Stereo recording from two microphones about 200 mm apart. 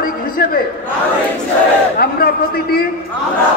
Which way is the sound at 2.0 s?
50° left (ahead or behind).